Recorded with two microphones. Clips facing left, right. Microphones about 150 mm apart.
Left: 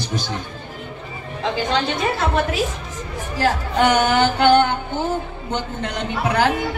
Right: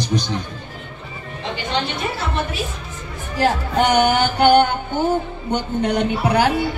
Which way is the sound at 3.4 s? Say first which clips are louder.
Even; 15° right (ahead or behind).